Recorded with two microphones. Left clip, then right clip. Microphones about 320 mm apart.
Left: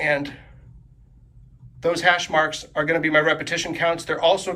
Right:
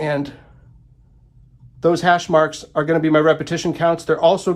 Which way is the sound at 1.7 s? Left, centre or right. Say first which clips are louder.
Right 4 dB; centre.